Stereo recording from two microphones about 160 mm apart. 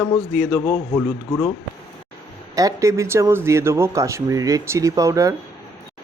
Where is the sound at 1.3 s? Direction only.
20° left (ahead or behind).